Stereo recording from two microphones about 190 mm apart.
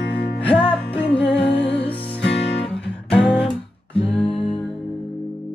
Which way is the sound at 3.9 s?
30° left (ahead or behind).